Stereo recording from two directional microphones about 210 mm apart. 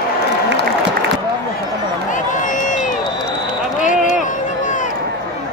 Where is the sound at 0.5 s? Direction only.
55° right (ahead or behind).